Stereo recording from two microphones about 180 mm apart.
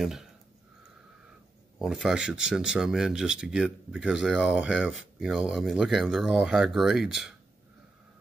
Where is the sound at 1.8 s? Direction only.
5° right (ahead or behind).